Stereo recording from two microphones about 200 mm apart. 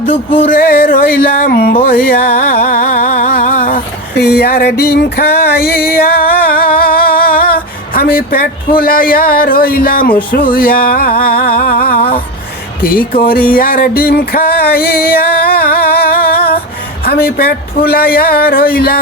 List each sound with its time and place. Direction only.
0.0 s music: 25° left (ahead or behind)
0.4 s music: 45° left (ahead or behind)